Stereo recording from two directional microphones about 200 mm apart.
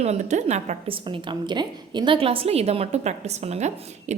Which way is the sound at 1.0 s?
25° right (ahead or behind).